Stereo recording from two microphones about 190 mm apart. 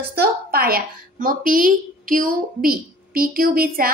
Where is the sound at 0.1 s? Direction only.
55° right (ahead or behind).